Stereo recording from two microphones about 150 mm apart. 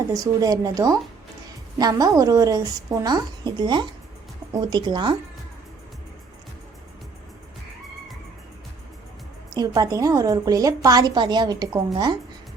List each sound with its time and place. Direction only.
0.1 s a woman's voice: 25° right (ahead or behind)
9.5 s a woman's voice: 25° right (ahead or behind)